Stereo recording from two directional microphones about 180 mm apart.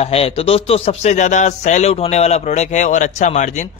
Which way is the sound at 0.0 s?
35° left (ahead or behind).